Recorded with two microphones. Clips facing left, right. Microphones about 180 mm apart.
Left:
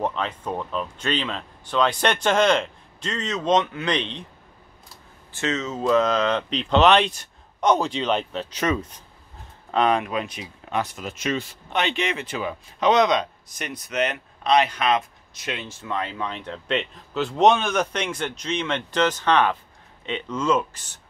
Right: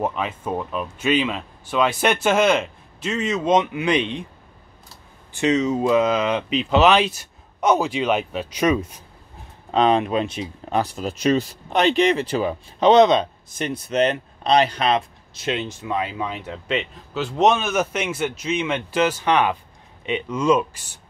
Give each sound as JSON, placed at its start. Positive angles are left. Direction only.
{"t": 0.0, "sound": "speech", "side_deg": -10}
{"t": 5.3, "sound": "speech", "side_deg": -15}
{"t": 15.8, "sound": "speech", "side_deg": -10}